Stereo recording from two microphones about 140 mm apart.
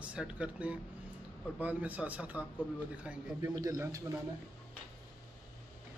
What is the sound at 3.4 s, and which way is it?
Speech, 25° right (ahead or behind).